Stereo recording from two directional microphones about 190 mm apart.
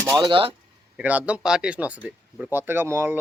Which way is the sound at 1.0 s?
10° right (ahead or behind).